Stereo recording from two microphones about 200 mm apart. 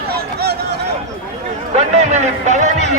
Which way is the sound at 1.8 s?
35° right (ahead or behind).